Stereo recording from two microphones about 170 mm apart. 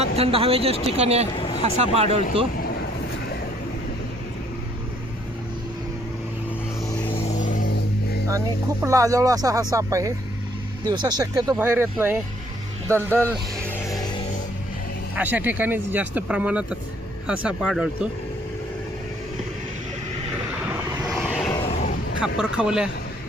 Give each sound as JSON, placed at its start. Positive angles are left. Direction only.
{"t": 0.0, "sound": "speech", "side_deg": -35}
{"t": 1.4, "sound": "vehicle", "side_deg": 30}
{"t": 1.6, "sound": "speech", "side_deg": -35}
{"t": 6.8, "sound": "vehicle", "side_deg": 20}
{"t": 7.2, "sound": "vehicle", "side_deg": 45}
{"t": 8.8, "sound": "speech", "side_deg": -20}
{"t": 13.1, "sound": "speech", "side_deg": 10}
{"t": 13.7, "sound": "music", "side_deg": 20}
{"t": 15.1, "sound": "speech", "side_deg": -10}
{"t": 21.1, "sound": "vehicle", "side_deg": 0}
{"t": 21.7, "sound": "vehicle", "side_deg": 45}
{"t": 22.4, "sound": "speech", "side_deg": -5}